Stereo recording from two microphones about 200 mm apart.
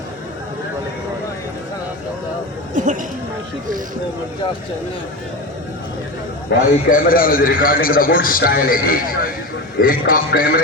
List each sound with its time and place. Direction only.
2.7 s speech: 40° right (ahead or behind)
6.5 s a man's voice: 45° left (ahead or behind)